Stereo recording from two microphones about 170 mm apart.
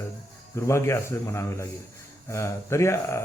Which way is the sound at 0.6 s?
15° left (ahead or behind).